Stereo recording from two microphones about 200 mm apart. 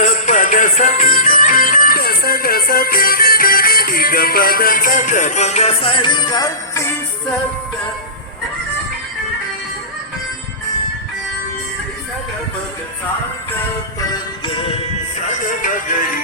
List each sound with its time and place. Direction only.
0.0 s music: 40° left (ahead or behind); by 6.8 s 20° left (ahead or behind)
15.3 s music: 40° left (ahead or behind)